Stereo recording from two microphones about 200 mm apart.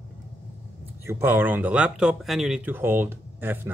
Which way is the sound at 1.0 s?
10° right (ahead or behind).